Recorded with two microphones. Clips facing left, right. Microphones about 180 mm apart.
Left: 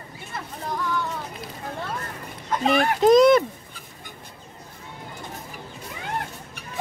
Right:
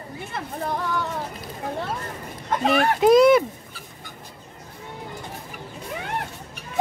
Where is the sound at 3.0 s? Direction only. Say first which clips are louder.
Even; 5° right (ahead or behind).